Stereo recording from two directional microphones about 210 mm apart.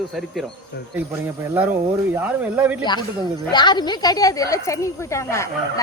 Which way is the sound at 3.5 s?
20° left (ahead or behind).